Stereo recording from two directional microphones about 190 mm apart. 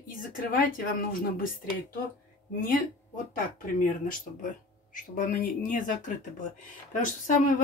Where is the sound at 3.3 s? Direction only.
45° left (ahead or behind).